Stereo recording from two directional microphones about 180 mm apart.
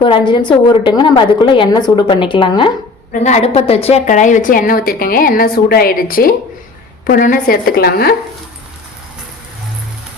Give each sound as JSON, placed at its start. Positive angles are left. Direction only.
{"t": 0.0, "sound": "a woman's voice", "side_deg": 25}
{"t": 3.1, "sound": "a woman's voice", "side_deg": 40}